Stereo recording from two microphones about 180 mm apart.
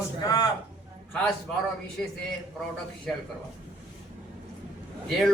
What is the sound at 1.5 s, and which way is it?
Speech, 5° left (ahead or behind).